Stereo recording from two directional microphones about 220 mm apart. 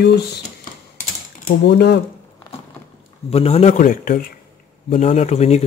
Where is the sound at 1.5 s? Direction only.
50° left (ahead or behind).